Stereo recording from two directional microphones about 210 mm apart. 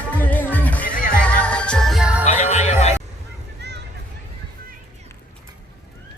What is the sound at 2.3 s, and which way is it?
Music, 35° left (ahead or behind).